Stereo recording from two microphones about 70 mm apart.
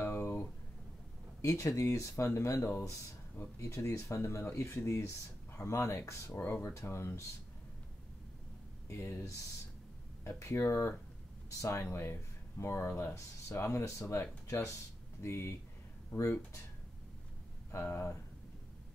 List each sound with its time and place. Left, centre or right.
0.0 s a sound: left
1.4 s speech: left
8.8 s speech: left
17.7 s speech: left